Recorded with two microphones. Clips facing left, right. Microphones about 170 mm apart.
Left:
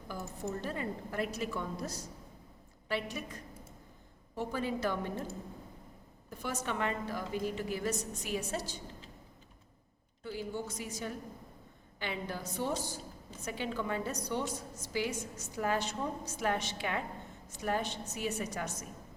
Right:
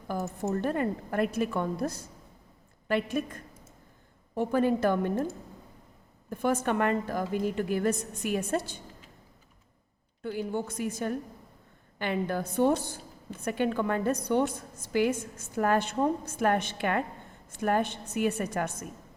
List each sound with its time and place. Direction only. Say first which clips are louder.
0.1 s a woman's voice: right 8 dB; 60° right (ahead or behind)
6.3 s a woman's voice: right 10 dB; 55° right (ahead or behind)
10.2 s a woman's voice: right 6 dB; 55° right (ahead or behind)